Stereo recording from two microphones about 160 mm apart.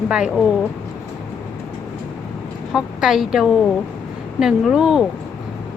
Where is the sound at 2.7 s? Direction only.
5° right (ahead or behind).